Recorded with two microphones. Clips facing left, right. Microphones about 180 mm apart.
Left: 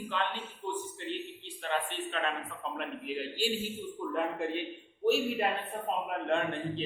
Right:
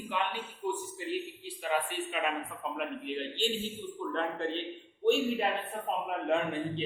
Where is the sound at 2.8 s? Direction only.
5° left (ahead or behind).